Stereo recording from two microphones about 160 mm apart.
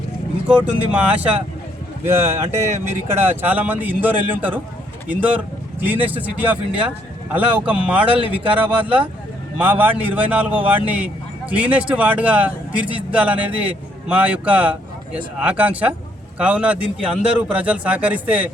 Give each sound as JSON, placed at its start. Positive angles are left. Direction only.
{"t": 0.4, "sound": "speech", "side_deg": -10}